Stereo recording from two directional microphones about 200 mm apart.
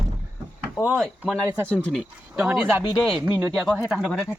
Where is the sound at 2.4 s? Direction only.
10° right (ahead or behind).